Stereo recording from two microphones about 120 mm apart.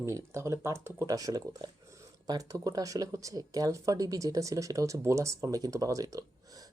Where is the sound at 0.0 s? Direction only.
25° right (ahead or behind).